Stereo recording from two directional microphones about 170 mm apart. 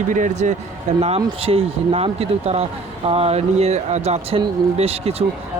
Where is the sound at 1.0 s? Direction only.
35° right (ahead or behind).